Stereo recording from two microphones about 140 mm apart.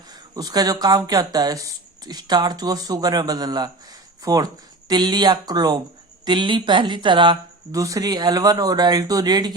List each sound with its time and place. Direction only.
0.1 s speech: 30° right (ahead or behind)